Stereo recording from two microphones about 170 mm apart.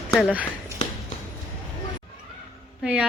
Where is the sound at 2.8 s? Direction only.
5° right (ahead or behind).